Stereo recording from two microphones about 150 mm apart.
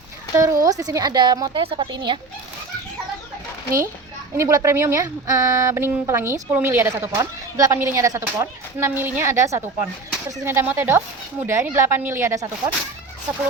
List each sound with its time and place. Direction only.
0.3 s a woman's voice: 20° right (ahead or behind)
4.4 s speech: 20° right (ahead or behind)